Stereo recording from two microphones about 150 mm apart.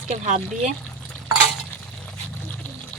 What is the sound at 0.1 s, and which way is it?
Speech, 50° right (ahead or behind).